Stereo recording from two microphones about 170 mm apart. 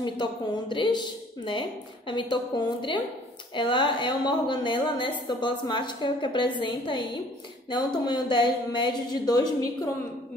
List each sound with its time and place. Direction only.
0.0 s a woman's voice: 30° left (ahead or behind)